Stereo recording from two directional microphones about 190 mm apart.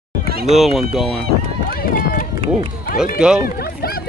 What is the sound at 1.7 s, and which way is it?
Run, 50° left (ahead or behind).